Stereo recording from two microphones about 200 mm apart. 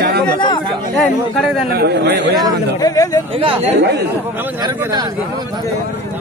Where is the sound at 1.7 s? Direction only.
50° right (ahead or behind).